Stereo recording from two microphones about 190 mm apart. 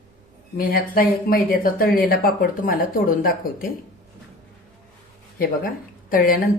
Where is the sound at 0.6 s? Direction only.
50° left (ahead or behind).